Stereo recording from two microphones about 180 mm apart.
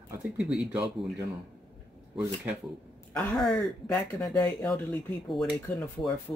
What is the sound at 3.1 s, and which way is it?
A man's voice, 10° left (ahead or behind).